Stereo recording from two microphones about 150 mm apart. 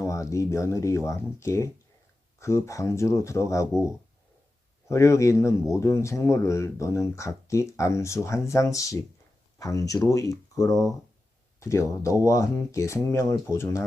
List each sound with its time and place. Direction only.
0.0 s speech: 20° left (ahead or behind)
4.9 s speech: 20° left (ahead or behind)